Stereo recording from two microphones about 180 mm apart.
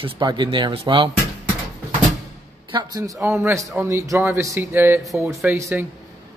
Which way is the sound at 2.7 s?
20° right (ahead or behind).